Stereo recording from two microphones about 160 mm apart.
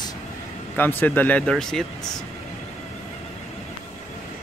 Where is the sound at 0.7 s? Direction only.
15° left (ahead or behind).